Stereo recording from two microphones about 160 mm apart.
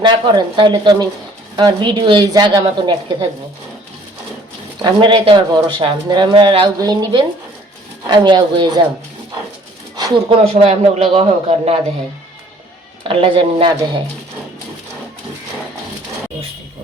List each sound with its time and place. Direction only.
0.0 s a woman's voice: 25° right (ahead or behind)
4.8 s a woman's voice: 30° right (ahead or behind)
9.9 s speech: 25° right (ahead or behind)
10.3 s speech: 40° right (ahead or behind)
13.1 s speech: 35° right (ahead or behind)